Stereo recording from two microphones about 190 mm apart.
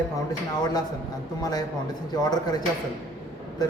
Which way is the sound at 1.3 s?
20° left (ahead or behind).